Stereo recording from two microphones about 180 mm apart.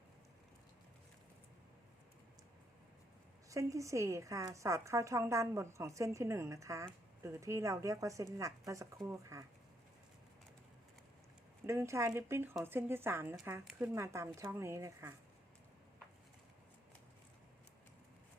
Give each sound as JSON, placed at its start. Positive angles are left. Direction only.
{"t": 3.5, "sound": "a woman's voice", "side_deg": -15}
{"t": 11.6, "sound": "a woman's voice", "side_deg": -15}